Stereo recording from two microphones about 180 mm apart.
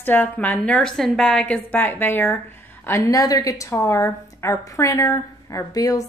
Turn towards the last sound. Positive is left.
turn(degrees=20)  # may be behind; listen again after turning